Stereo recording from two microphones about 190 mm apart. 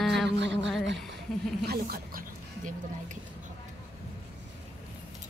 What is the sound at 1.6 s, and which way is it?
Speech, 55° right (ahead or behind).